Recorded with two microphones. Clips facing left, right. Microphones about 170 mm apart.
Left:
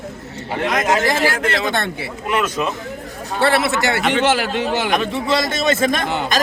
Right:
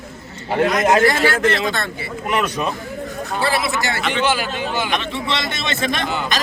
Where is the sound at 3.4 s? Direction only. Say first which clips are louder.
Left 5 dB; 65° left (ahead or behind).